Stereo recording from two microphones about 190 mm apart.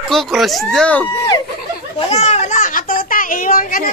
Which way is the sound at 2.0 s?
35° left (ahead or behind).